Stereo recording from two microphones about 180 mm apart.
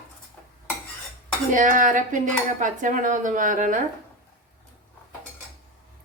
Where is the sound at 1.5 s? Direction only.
45° right (ahead or behind).